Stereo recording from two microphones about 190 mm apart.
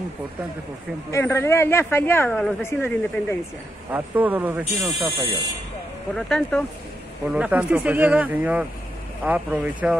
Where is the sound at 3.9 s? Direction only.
10° right (ahead or behind).